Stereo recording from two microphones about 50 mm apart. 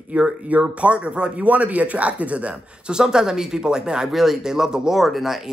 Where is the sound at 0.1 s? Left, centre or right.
Right.